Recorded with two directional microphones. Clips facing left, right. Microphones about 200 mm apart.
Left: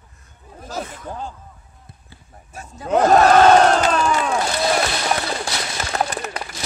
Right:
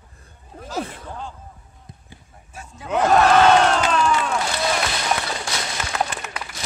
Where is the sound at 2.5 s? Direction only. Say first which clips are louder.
Left 5 dB; 40° left (ahead or behind).